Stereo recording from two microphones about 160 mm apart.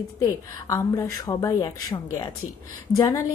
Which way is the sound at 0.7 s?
20° left (ahead or behind).